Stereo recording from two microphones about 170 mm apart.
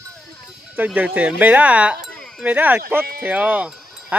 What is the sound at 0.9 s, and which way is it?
Speech, 10° right (ahead or behind).